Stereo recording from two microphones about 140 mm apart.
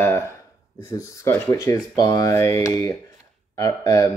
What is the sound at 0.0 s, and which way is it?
Speech, 20° left (ahead or behind).